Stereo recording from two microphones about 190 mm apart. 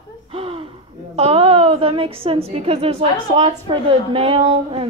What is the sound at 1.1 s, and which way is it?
A woman's voice, 30° right (ahead or behind).